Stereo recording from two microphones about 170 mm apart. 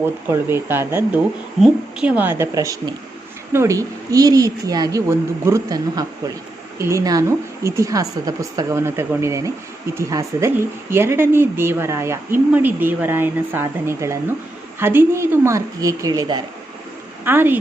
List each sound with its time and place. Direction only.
0.0 s a woman's voice: 15° right (ahead or behind)
17.2 s a woman's voice: 10° right (ahead or behind)